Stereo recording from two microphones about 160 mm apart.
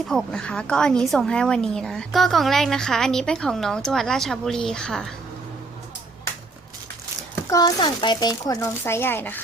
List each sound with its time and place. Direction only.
0.1 s a woman's voice: 5° left (ahead or behind)
7.5 s speech: 25° left (ahead or behind)
8.8 s speech: 15° left (ahead or behind)